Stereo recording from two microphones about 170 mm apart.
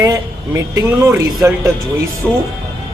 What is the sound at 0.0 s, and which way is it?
Speech, 20° right (ahead or behind).